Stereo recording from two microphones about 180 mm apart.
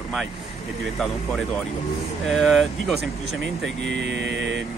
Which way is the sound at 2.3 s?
Centre (ahead or behind).